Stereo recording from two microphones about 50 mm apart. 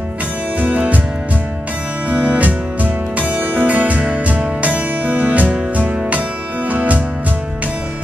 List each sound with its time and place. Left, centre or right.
0.6 s music: right
2.0 s music: right